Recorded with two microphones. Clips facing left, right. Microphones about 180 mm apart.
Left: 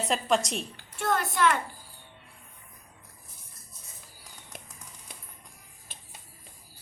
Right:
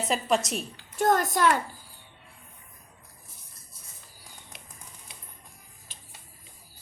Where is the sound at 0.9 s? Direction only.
40° right (ahead or behind).